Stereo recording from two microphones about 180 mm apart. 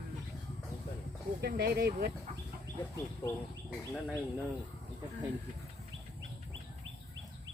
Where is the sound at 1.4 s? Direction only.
60° right (ahead or behind).